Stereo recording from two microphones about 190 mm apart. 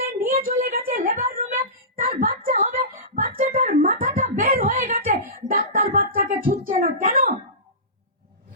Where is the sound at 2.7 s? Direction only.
45° right (ahead or behind).